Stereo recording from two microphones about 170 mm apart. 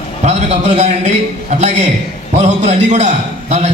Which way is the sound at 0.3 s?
40° right (ahead or behind).